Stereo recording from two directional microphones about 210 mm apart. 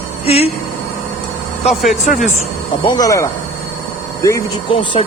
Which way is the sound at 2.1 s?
35° left (ahead or behind).